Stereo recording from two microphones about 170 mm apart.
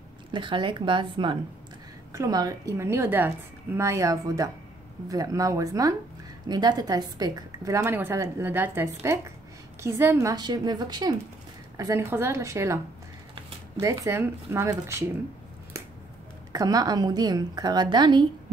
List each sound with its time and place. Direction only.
0.3 s a woman's voice: 30° right (ahead or behind)
16.5 s a woman's voice: 20° right (ahead or behind)